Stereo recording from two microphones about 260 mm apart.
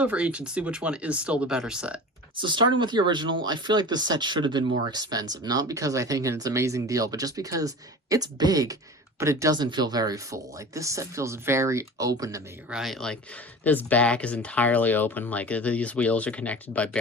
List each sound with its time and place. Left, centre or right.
0.0 s speech: centre
2.4 s speech: centre
12.7 s speech: centre